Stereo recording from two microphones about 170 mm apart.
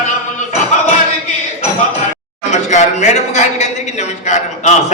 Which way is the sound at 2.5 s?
45° left (ahead or behind).